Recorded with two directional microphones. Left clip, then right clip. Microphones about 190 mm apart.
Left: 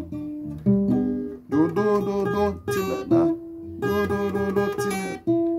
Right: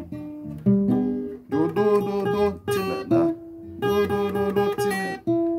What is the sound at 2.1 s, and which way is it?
Music, 5° right (ahead or behind).